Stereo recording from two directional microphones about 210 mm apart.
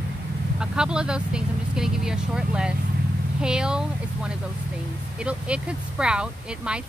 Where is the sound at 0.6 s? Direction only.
5° right (ahead or behind).